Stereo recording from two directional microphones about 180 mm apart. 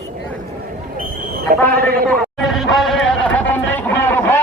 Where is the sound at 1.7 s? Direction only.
55° right (ahead or behind).